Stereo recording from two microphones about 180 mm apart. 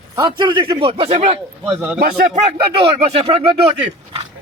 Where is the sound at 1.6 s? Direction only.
5° right (ahead or behind).